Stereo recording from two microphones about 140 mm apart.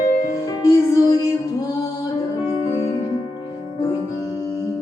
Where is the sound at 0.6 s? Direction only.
25° left (ahead or behind).